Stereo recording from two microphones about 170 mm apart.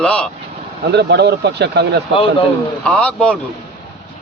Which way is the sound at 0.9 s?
85° right.